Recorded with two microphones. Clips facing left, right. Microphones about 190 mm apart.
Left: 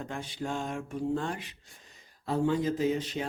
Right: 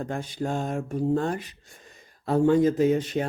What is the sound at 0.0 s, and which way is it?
Speech, 45° right (ahead or behind).